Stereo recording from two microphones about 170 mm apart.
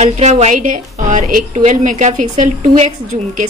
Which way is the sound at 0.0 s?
45° right (ahead or behind).